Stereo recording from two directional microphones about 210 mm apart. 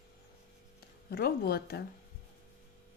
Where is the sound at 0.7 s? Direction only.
45° left (ahead or behind).